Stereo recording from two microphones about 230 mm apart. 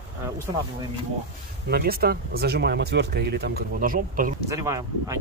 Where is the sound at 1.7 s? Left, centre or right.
Right.